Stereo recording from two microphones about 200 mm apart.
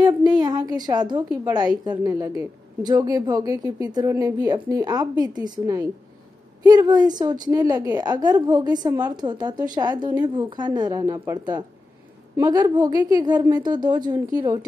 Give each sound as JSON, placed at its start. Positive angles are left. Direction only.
{"t": 0.0, "sound": "a woman's voice", "side_deg": -20}